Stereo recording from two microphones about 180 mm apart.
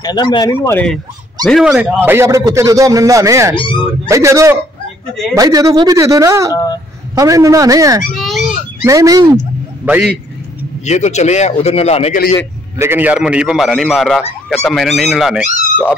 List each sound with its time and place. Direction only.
0.0 s speech: 25° left (ahead or behind)
0.5 s speech: 10° left (ahead or behind)
1.5 s a man's voice: centre (ahead or behind)
3.5 s speech: 25° left (ahead or behind)
4.1 s a man's voice: 15° right (ahead or behind)
8.2 s a sound: centre (ahead or behind)
8.8 s a man's voice: 20° right (ahead or behind)
10.9 s speech: 40° left (ahead or behind)
12.7 s a man's voice: 10° right (ahead or behind)